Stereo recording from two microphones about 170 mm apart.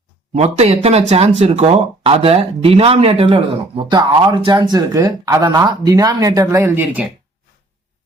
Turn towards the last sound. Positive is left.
turn(degrees=-10)  # may be behind; listen again after turning